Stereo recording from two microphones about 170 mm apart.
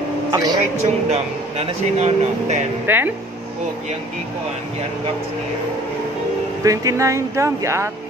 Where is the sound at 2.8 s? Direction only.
10° right (ahead or behind).